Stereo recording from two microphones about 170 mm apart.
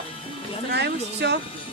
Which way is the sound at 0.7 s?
80° right.